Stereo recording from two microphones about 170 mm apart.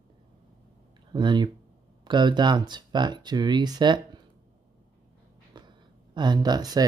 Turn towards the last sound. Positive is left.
turn(degrees=-25)  # may be behind; listen again after turning